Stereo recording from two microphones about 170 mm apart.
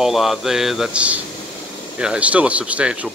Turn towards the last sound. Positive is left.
turn(degrees=-5)  # may be behind; listen again after turning